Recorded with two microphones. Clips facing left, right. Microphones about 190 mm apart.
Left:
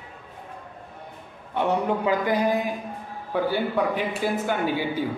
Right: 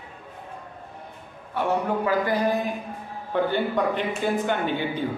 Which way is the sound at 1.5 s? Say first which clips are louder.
Left 1 dB; 20° left (ahead or behind).